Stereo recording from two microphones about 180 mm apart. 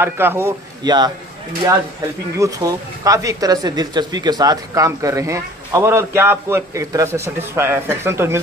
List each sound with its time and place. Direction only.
0.0 s speech: 10° right (ahead or behind)
2.3 s speech: 20° right (ahead or behind)